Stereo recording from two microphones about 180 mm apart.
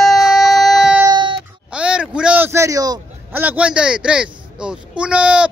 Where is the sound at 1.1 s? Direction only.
25° right (ahead or behind).